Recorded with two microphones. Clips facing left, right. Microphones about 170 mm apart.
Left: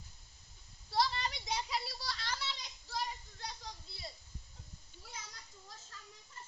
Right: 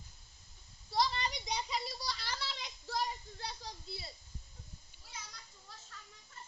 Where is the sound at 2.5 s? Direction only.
60° right (ahead or behind).